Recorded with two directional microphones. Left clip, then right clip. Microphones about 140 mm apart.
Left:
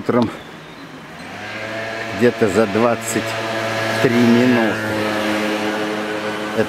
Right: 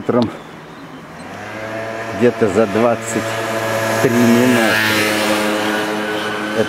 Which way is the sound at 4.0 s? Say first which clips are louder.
Right 1 dB; 25° right (ahead or behind).